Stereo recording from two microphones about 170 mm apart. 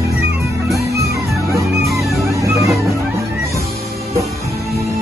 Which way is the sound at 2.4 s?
20° right (ahead or behind).